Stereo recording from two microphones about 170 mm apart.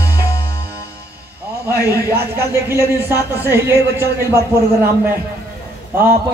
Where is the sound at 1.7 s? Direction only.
70° right (ahead or behind).